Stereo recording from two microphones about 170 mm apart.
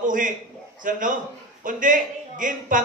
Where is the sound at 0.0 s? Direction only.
50° right (ahead or behind).